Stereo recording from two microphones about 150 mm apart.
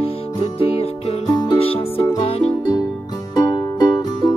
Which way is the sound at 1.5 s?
40° left (ahead or behind).